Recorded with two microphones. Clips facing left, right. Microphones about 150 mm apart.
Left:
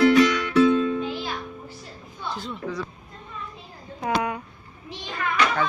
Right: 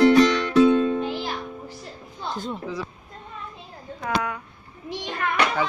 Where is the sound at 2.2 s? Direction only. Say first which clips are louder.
Right 2 dB; 45° right (ahead or behind).